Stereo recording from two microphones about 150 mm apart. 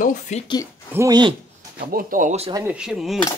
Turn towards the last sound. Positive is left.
turn(degrees=0)  # may be behind; listen again after turning